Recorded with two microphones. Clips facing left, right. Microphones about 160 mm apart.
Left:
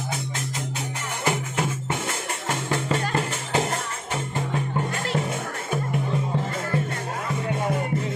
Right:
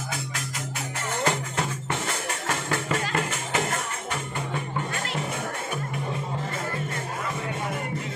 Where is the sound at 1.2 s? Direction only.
15° left (ahead or behind).